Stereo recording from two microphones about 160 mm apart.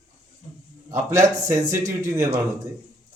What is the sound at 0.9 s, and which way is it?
A man's voice, 15° right (ahead or behind).